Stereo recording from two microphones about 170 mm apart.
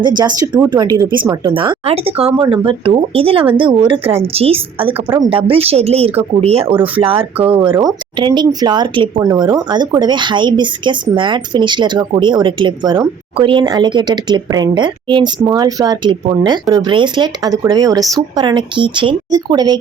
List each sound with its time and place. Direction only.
0.0 s speech: 25° right (ahead or behind)
4.9 s speech: 15° right (ahead or behind)
5.2 s speech: 30° right (ahead or behind)